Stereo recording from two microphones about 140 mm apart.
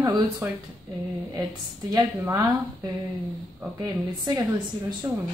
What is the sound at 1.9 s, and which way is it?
Speech, 25° right (ahead or behind).